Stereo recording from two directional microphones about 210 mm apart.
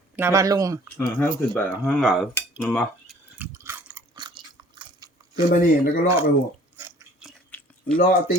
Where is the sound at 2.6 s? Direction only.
5° left (ahead or behind).